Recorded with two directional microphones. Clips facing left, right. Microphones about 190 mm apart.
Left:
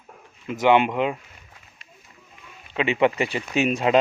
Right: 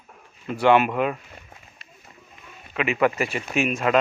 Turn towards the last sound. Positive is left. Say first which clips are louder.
# left 2 dB
turn(degrees=30)  # may be behind; listen again after turning